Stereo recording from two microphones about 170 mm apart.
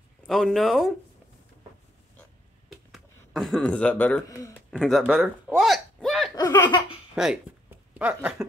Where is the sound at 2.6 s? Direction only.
Centre (ahead or behind); by 4.5 s 20° left (ahead or behind).